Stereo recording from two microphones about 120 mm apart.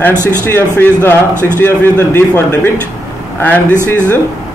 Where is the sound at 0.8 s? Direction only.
20° left (ahead or behind).